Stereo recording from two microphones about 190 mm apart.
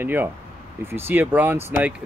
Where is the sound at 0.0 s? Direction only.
10° right (ahead or behind).